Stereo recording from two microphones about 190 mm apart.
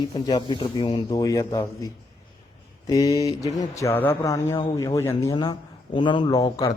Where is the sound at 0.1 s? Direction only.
25° left (ahead or behind).